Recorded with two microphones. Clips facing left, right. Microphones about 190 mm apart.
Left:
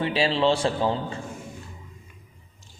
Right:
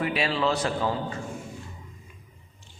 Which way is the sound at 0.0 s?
30° left (ahead or behind).